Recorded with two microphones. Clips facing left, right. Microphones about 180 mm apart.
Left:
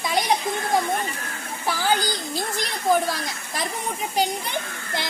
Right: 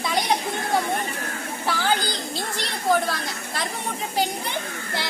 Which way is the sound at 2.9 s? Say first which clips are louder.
Left 1 dB; 10° left (ahead or behind).